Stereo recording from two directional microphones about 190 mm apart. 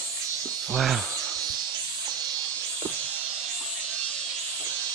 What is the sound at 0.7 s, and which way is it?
Speech, centre (ahead or behind).